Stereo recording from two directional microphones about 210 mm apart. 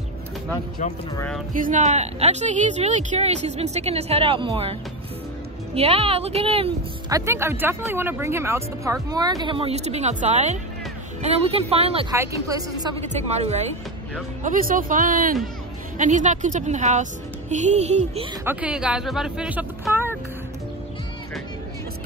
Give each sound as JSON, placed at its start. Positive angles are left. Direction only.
{"t": 1.5, "sound": "a woman's voice", "side_deg": -35}
{"t": 5.8, "sound": "speech", "side_deg": -30}
{"t": 12.1, "sound": "speech", "side_deg": -15}
{"t": 13.0, "sound": "a woman's voice", "side_deg": -30}
{"t": 18.4, "sound": "speech", "side_deg": -10}